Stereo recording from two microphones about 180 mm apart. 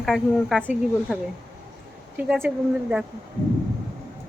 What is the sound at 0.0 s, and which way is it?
A woman's voice, centre (ahead or behind).